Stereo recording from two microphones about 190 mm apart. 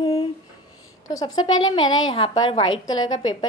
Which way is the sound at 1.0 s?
20° left (ahead or behind).